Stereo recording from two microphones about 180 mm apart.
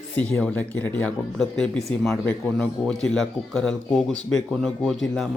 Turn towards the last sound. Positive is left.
turn(degrees=0)  # may be behind; listen again after turning